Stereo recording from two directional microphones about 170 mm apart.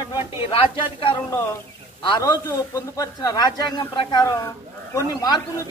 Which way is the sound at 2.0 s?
25° left (ahead or behind).